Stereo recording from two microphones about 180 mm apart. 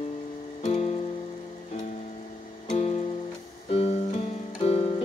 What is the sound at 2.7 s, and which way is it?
Music, 40° left (ahead or behind).